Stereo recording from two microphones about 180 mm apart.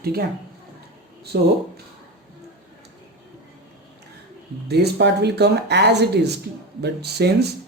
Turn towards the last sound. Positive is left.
turn(degrees=-65)  # may be behind; listen again after turning